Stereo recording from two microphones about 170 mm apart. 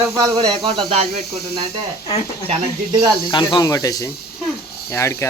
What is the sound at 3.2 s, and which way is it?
Speech, 25° left (ahead or behind).